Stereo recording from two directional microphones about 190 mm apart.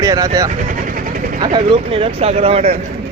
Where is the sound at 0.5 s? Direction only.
45° right (ahead or behind).